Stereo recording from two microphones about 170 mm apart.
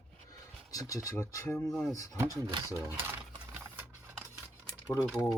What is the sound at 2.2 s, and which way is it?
Speech, 15° right (ahead or behind).